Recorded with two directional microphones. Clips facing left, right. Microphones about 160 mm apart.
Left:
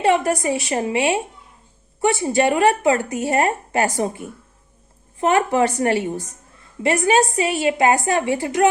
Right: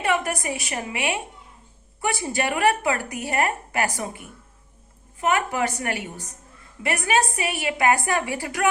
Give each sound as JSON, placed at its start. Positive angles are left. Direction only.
{"t": 0.0, "sound": "a woman's voice", "side_deg": 25}